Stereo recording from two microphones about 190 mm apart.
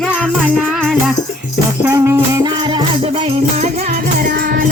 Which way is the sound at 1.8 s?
15° right (ahead or behind).